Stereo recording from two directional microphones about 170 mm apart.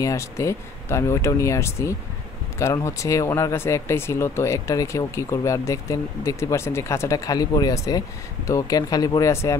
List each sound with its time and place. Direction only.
0.0 s speech: 20° left (ahead or behind)